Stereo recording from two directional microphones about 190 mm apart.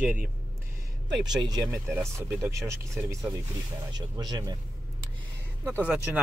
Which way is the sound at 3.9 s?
20° right (ahead or behind).